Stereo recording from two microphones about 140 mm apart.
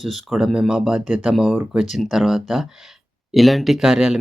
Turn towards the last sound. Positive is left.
turn(degrees=-5)  # may be behind; listen again after turning